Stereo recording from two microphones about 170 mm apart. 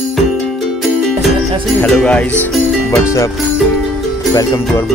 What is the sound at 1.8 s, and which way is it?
Speech, 5° left (ahead or behind).